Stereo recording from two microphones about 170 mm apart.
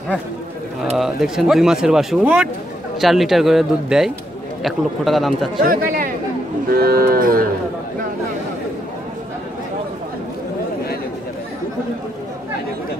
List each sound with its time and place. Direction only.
0.9 s speech: centre (ahead or behind)
5.6 s speech: 55° right (ahead or behind)
6.7 s cattle: 60° right (ahead or behind)